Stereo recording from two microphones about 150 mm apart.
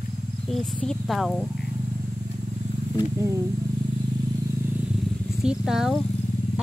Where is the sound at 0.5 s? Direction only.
5° left (ahead or behind).